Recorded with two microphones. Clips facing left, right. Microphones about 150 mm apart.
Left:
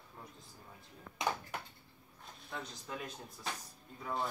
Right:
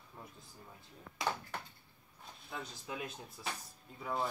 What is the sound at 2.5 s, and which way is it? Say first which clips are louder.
Speech: even; 5° right (ahead or behind).